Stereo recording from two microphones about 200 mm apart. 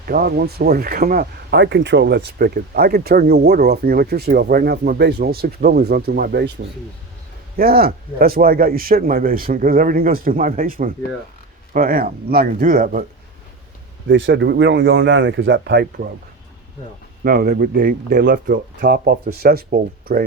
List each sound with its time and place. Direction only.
0.0 s speech: 50° right (ahead or behind)
14.1 s speech: 70° right (ahead or behind)
17.2 s speech: 50° right (ahead or behind)